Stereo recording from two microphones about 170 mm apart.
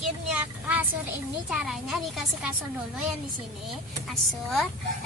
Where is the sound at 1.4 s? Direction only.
5° right (ahead or behind).